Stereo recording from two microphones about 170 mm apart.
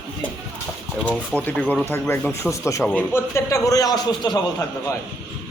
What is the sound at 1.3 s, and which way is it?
A man's voice, 5° left (ahead or behind).